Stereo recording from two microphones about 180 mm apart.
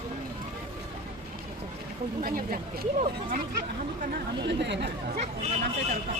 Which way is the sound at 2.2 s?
55° right (ahead or behind).